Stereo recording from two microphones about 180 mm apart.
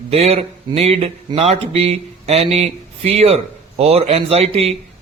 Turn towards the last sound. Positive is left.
turn(degrees=-35)  # may be behind; listen again after turning